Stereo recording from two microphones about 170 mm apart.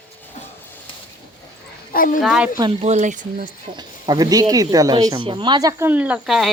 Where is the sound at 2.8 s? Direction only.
45° right (ahead or behind).